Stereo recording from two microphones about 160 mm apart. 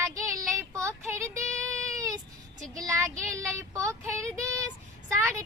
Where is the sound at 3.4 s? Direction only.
20° right (ahead or behind).